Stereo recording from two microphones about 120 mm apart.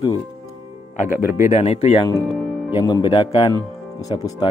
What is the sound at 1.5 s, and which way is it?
Speech, 60° left (ahead or behind).